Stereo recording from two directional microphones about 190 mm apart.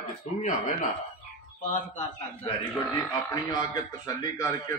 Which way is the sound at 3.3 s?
20° left (ahead or behind).